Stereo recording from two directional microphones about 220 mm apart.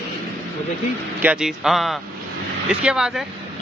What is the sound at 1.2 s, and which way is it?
Speech, 5° right (ahead or behind).